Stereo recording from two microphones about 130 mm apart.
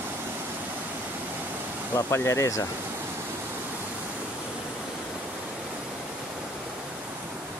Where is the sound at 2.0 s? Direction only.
20° left (ahead or behind).